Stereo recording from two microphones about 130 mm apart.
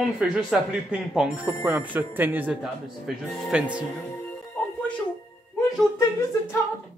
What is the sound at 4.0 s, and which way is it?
Music, 10° left (ahead or behind).